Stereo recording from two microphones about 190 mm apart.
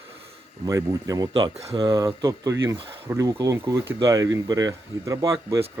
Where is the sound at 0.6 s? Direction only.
20° right (ahead or behind).